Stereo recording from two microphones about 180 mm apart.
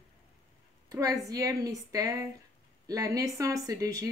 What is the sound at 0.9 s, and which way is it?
A woman's voice, 20° right (ahead or behind).